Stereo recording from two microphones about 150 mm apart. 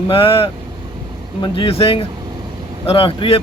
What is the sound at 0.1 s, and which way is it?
A man's voice, 40° left (ahead or behind).